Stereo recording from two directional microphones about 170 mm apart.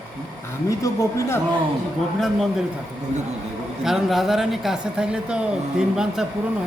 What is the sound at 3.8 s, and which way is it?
Speech, centre (ahead or behind).